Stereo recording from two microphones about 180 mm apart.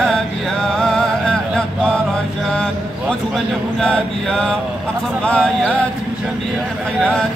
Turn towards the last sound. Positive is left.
turn(degrees=5)  # may be behind; listen again after turning